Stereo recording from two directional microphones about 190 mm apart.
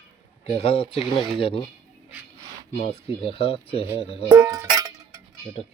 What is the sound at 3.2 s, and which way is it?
Speech, 30° left (ahead or behind).